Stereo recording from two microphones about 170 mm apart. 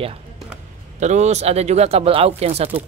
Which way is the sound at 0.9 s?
45° right (ahead or behind).